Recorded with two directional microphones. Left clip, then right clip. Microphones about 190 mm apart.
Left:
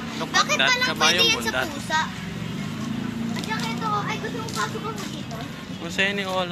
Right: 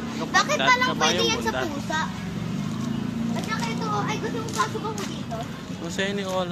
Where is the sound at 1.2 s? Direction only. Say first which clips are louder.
Left 3 dB; 35° right (ahead or behind).